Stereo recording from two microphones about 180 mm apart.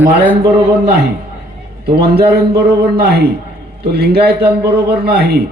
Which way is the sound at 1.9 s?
65° right (ahead or behind).